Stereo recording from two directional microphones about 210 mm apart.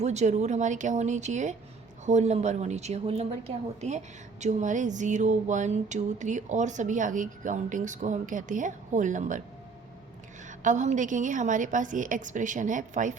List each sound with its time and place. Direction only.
0.0 s a woman's voice: 35° right (ahead or behind)
10.6 s a woman's voice: 35° right (ahead or behind)